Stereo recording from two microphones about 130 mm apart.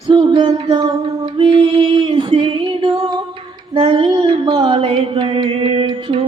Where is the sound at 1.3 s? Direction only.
45° right (ahead or behind).